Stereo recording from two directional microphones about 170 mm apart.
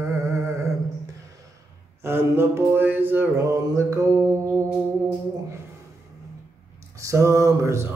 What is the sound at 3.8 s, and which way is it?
Mantra, 20° right (ahead or behind).